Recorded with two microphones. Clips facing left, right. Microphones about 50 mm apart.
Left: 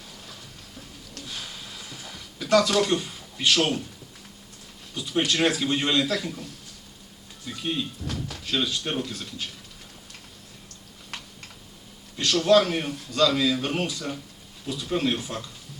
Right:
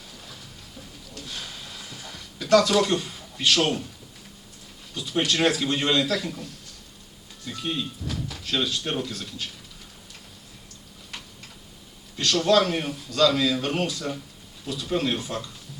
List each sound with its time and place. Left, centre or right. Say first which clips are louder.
1.2 s a sound: even; centre
2.7 s a man's voice: right 1 dB; centre
4.9 s a man's voice: even; centre
7.4 s a man's voice: even; centre
9.0 s a man's voice: right 1 dB; centre
12.1 s a man's voice: left 1 dB; centre
13.7 s a man's voice: right 1 dB; centre